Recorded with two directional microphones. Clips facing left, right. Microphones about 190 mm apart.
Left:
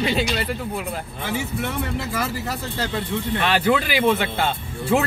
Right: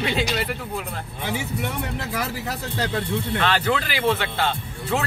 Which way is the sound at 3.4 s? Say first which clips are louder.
Left 4 dB; 10° left (ahead or behind).